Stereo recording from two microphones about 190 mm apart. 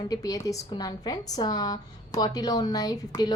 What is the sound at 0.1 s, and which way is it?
A woman's voice, 20° left (ahead or behind).